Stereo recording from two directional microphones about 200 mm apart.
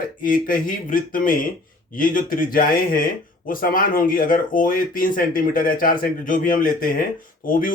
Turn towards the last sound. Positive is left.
turn(degrees=40)  # may be behind; listen again after turning